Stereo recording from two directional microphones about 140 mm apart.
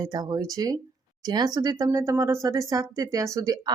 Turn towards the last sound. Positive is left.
turn(degrees=-25)  # may be behind; listen again after turning